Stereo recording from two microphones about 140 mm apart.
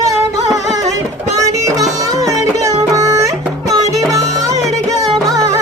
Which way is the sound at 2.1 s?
25° right (ahead or behind).